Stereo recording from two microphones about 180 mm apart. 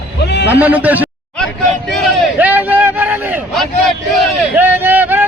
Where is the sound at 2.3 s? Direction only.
10° right (ahead or behind).